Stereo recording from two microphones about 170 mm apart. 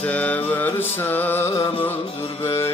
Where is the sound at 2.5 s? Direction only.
15° left (ahead or behind).